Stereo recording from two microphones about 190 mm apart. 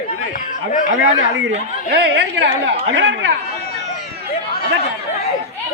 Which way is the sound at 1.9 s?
60° right (ahead or behind).